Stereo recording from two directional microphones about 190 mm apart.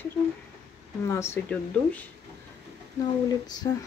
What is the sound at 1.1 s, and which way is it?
Speech, 15° left (ahead or behind).